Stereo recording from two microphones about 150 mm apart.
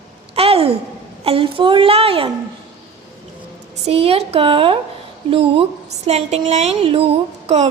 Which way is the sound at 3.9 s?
40° right (ahead or behind).